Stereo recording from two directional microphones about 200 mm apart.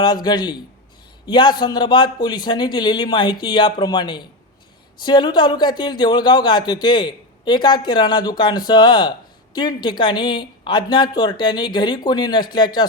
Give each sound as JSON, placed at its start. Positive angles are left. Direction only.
{"t": 0.0, "sound": "a man's voice", "side_deg": 20}